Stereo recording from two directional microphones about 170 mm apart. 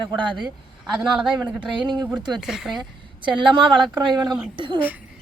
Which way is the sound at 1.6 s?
25° right (ahead or behind).